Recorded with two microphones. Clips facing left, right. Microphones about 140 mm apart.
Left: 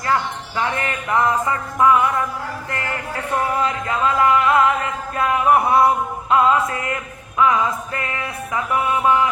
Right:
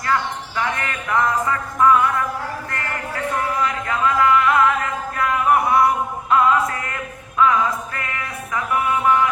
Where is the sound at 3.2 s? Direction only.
25° left (ahead or behind).